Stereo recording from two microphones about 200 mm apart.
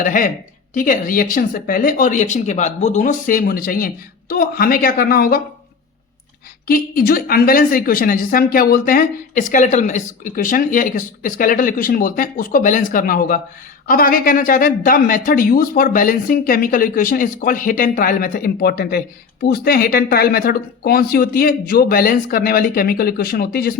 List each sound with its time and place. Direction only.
0.0 s speech: 45° left (ahead or behind)
6.7 s speech: 45° left (ahead or behind)